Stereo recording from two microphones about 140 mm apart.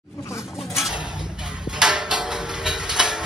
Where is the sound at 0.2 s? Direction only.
20° left (ahead or behind).